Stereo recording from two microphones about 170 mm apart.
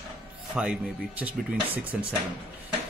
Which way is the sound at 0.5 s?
5° right (ahead or behind).